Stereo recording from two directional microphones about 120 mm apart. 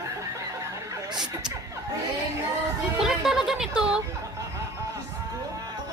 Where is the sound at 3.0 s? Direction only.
5° right (ahead or behind).